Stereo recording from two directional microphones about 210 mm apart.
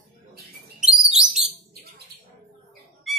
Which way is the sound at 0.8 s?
5° right (ahead or behind).